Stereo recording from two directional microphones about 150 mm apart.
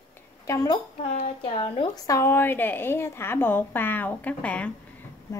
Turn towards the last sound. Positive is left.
turn(degrees=10)  # may be behind; listen again after turning